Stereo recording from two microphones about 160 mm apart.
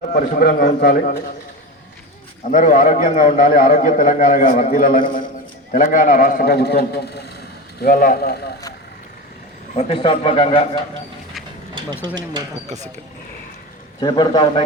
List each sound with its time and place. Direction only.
0.1 s a man's voice: 65° left (ahead or behind)
2.5 s a man's voice: 55° left (ahead or behind); by 8.5 s 70° left (ahead or behind)
9.7 s a man's voice: 35° left (ahead or behind)
12.6 s speech: 45° right (ahead or behind)
14.0 s a man's voice: 25° left (ahead or behind)